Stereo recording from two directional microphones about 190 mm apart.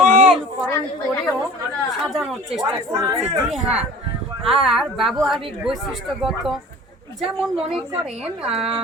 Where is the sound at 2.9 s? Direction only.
15° right (ahead or behind).